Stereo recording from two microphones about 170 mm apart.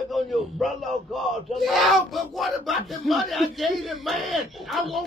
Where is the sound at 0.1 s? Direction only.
Centre (ahead or behind).